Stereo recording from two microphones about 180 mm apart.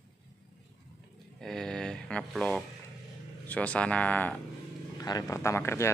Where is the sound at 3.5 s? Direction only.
5° left (ahead or behind).